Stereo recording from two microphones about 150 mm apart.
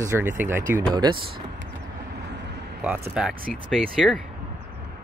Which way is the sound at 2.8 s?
5° right (ahead or behind).